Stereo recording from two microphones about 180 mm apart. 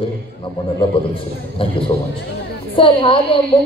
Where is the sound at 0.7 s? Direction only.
30° left (ahead or behind).